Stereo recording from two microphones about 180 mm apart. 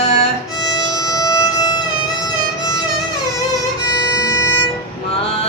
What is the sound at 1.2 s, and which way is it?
Music, 20° left (ahead or behind).